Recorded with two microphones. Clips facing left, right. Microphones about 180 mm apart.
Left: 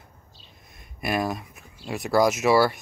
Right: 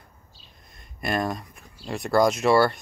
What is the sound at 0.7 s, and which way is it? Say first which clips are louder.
Speech: even; 5° left (ahead or behind).